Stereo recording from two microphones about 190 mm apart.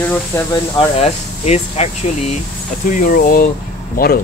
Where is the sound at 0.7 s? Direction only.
25° left (ahead or behind).